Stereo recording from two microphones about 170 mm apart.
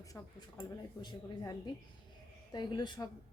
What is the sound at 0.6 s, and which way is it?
A woman's voice, 25° left (ahead or behind).